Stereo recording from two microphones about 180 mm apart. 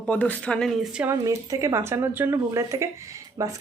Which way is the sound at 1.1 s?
20° right (ahead or behind).